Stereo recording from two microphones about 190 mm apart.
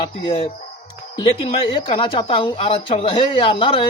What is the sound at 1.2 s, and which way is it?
Speech, 30° left (ahead or behind).